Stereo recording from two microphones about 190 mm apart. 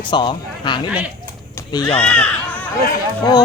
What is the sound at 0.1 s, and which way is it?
Speech, 25° left (ahead or behind).